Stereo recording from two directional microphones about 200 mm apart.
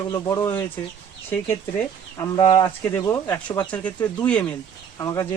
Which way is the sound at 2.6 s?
15° left (ahead or behind).